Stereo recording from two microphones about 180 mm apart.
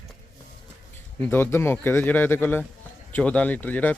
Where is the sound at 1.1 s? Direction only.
10° left (ahead or behind).